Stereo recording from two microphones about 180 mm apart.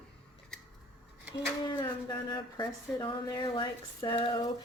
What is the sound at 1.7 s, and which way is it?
A woman's voice, 25° left (ahead or behind).